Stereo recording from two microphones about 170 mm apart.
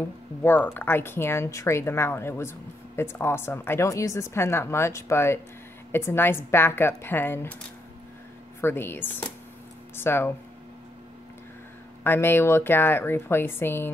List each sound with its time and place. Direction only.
0.4 s a woman's voice: 10° left (ahead or behind)
8.5 s a woman's voice: 15° left (ahead or behind)
12.0 s a woman's voice: 15° left (ahead or behind)